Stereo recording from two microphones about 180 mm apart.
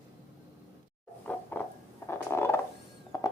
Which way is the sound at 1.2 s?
10° left (ahead or behind).